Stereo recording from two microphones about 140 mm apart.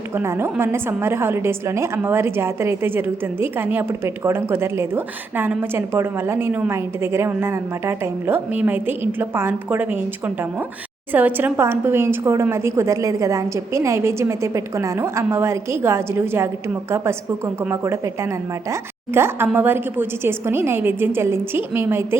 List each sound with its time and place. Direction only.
0.2 s a woman's voice: 15° right (ahead or behind)